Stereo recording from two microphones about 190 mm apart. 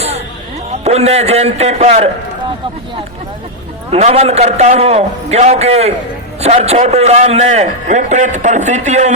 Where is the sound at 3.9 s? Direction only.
35° right (ahead or behind).